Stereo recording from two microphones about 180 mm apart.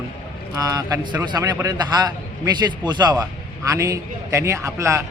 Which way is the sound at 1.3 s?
25° right (ahead or behind).